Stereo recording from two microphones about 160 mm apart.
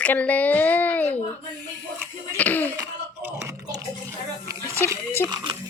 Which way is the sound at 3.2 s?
20° right (ahead or behind).